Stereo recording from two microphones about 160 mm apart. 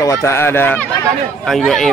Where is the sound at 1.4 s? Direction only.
Centre (ahead or behind).